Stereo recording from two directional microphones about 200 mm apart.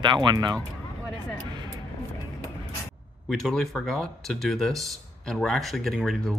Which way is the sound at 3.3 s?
Centre (ahead or behind).